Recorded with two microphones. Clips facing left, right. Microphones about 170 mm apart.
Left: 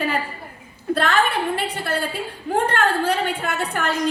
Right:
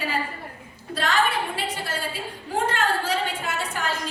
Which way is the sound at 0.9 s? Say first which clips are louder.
Left 3 dB; 55° left (ahead or behind).